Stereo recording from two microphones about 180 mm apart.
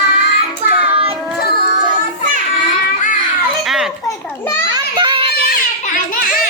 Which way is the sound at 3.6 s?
Centre (ahead or behind).